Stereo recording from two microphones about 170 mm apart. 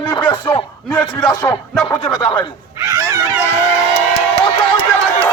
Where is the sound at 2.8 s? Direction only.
15° right (ahead or behind).